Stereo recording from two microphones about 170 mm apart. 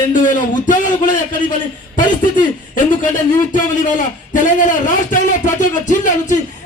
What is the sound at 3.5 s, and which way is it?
Speech, 50° left (ahead or behind).